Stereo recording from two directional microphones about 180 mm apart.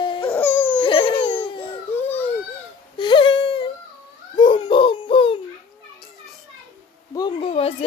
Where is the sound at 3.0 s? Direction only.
25° left (ahead or behind).